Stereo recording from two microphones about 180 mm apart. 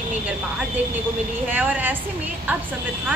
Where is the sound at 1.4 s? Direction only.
10° right (ahead or behind).